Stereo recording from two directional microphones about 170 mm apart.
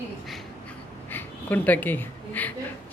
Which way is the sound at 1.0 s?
10° left (ahead or behind).